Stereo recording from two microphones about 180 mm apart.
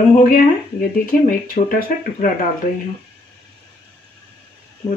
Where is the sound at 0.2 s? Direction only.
50° left (ahead or behind).